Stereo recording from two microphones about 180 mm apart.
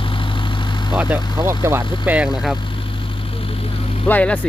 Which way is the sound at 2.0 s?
5° right (ahead or behind).